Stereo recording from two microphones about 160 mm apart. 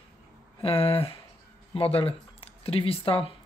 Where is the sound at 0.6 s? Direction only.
35° left (ahead or behind).